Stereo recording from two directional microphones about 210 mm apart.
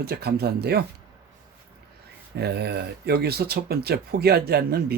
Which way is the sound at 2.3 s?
50° right (ahead or behind).